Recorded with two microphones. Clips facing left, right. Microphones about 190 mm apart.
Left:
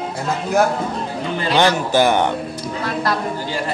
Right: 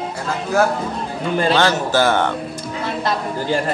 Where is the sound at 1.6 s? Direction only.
15° left (ahead or behind).